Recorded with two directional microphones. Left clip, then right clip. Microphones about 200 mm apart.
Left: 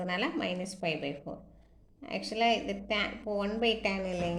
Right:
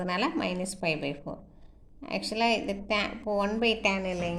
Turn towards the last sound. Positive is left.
turn(degrees=-25)  # may be behind; listen again after turning